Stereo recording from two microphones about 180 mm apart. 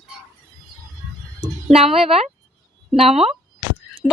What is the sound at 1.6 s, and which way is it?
Speech, 35° right (ahead or behind).